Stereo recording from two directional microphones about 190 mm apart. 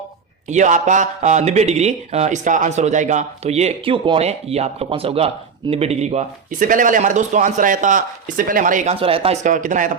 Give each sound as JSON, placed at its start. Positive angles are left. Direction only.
{"t": 0.4, "sound": "speech", "side_deg": -40}